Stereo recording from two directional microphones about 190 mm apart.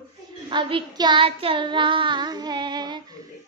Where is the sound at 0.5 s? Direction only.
25° right (ahead or behind).